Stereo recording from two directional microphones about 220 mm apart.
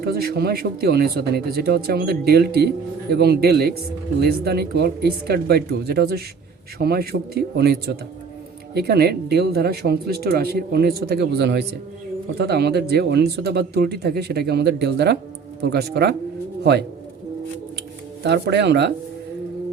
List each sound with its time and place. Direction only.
0.0 s speech: 45° right (ahead or behind)
18.2 s speech: 50° right (ahead or behind)